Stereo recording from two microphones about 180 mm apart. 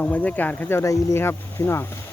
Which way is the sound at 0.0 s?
10° left (ahead or behind).